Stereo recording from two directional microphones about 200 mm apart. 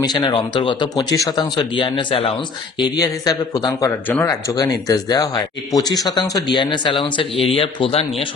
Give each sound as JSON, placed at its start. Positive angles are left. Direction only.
{"t": 0.0, "sound": "speech", "side_deg": 20}